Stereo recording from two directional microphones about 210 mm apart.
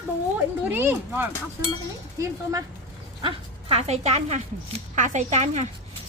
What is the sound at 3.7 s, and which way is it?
Speech, 30° right (ahead or behind).